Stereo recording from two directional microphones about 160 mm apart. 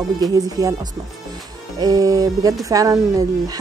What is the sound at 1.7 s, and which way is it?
Speech, 25° right (ahead or behind).